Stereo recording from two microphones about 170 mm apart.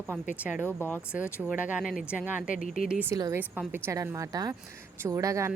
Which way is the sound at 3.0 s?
15° right (ahead or behind).